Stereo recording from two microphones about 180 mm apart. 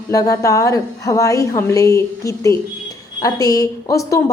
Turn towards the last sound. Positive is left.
turn(degrees=20)  # may be behind; listen again after turning